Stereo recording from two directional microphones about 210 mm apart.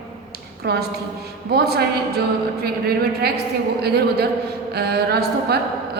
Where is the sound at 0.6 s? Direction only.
50° right (ahead or behind).